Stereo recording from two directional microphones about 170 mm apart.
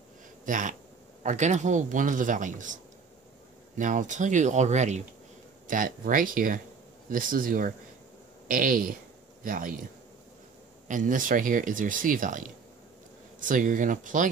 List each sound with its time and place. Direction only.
0.5 s speech: 50° right (ahead or behind)
5.7 s speech: 55° right (ahead or behind)
10.9 s speech: 50° right (ahead or behind)